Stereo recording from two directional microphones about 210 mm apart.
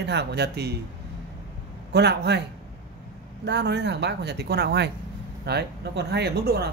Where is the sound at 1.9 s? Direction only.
50° right (ahead or behind).